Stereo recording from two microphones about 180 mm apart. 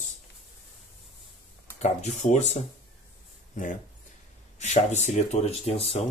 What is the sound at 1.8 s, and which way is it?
Speech, 40° left (ahead or behind).